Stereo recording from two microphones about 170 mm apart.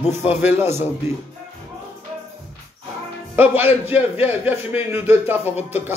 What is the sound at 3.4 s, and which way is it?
A man's voice, 10° right (ahead or behind).